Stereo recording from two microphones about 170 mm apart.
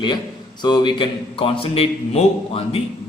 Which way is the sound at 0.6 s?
25° left (ahead or behind).